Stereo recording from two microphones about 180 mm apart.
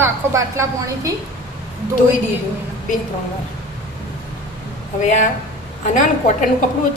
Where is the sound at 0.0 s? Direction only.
15° right (ahead or behind).